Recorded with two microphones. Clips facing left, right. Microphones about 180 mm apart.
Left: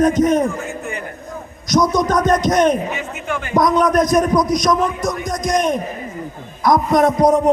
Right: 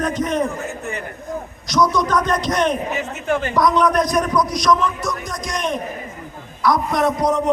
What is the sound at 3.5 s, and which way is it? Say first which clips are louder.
A man's voice: left 4 dB; 45° left (ahead or behind).